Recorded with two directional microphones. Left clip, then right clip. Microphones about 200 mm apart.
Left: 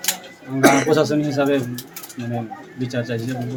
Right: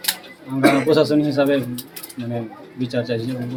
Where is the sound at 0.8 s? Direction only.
5° left (ahead or behind).